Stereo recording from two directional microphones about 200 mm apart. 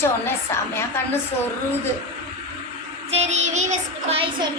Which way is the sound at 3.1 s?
35° right (ahead or behind).